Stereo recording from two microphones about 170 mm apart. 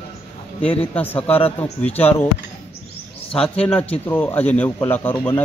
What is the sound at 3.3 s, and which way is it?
Speech, 35° left (ahead or behind).